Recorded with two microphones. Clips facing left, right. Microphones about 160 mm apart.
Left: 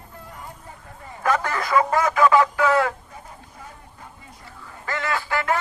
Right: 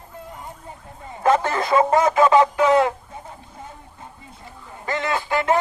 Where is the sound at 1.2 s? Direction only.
25° right (ahead or behind).